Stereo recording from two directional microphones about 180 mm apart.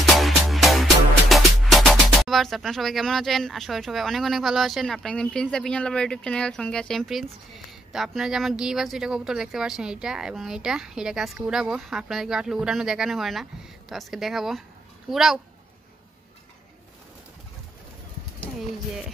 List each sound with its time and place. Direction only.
0.0 s music: centre (ahead or behind)
1.3 s speech: centre (ahead or behind)